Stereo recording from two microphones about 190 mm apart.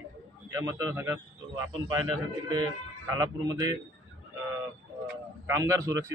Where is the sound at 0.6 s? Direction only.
20° right (ahead or behind).